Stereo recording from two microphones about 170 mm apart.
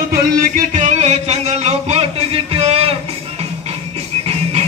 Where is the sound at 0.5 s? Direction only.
45° right (ahead or behind).